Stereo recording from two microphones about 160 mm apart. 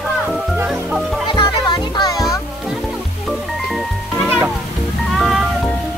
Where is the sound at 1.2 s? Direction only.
30° left (ahead or behind).